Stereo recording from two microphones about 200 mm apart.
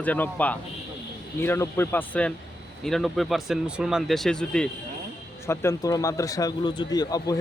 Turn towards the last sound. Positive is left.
turn(degrees=20)  # may be behind; listen again after turning